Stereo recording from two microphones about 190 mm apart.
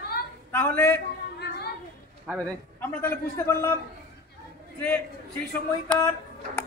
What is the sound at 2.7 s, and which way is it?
A man's voice, 10° left (ahead or behind).